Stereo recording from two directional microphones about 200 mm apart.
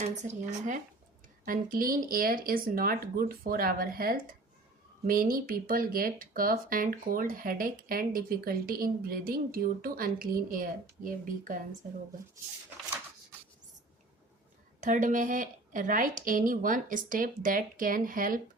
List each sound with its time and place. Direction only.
0.0 s speech: 35° right (ahead or behind)
14.8 s speech: 40° right (ahead or behind)